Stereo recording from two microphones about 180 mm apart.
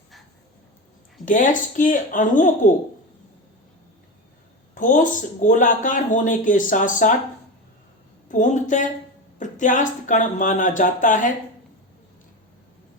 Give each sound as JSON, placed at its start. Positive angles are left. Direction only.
{"t": 1.2, "sound": "speech", "side_deg": 45}
{"t": 4.7, "sound": "speech", "side_deg": 45}
{"t": 8.3, "sound": "a woman's voice", "side_deg": 45}